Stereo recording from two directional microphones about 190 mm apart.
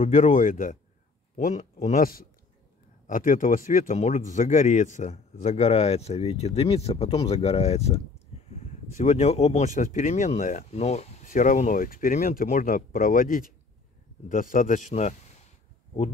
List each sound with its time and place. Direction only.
0.0 s speech: 40° left (ahead or behind)